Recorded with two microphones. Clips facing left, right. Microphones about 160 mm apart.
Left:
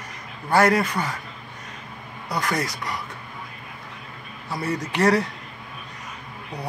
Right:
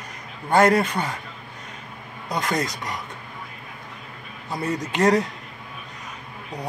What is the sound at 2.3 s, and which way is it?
Speech, 25° right (ahead or behind).